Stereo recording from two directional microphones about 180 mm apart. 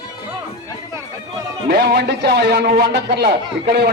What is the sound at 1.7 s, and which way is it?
Speech, 60° right (ahead or behind).